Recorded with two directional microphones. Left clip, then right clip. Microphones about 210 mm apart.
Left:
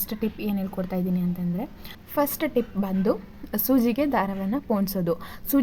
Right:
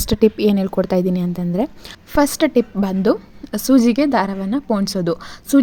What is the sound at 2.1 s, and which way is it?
A woman's voice, 25° right (ahead or behind).